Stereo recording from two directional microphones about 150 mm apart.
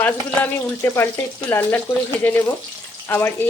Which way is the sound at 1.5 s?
15° left (ahead or behind).